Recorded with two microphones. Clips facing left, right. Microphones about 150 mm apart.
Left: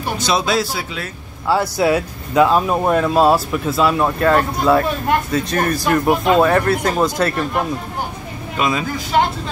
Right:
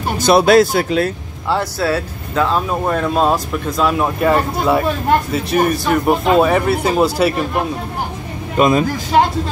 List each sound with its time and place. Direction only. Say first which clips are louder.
0.2 s speech: right 10 dB; 60° right (ahead or behind)
1.5 s speech: left 2 dB; 15° left (ahead or behind); by 7.4 s 10° right (ahead or behind)
8.5 s speech: right 7 dB; 45° right (ahead or behind)